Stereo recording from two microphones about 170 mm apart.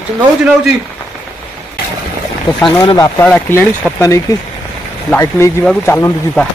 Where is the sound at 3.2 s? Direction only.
10° left (ahead or behind).